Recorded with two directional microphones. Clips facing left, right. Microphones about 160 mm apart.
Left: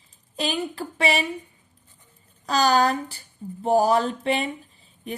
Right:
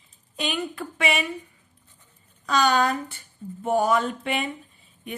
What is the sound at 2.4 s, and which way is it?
Speech, 35° left (ahead or behind).